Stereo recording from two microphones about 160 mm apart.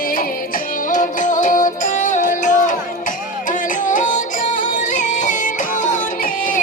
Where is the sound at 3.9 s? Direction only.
50° left (ahead or behind).